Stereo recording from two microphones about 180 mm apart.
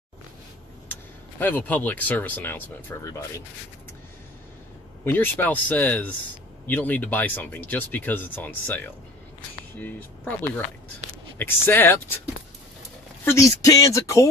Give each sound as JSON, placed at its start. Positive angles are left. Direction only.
{"t": 1.4, "sound": "speech", "side_deg": 10}
{"t": 5.0, "sound": "speech", "side_deg": 10}
{"t": 13.2, "sound": "speech", "side_deg": 15}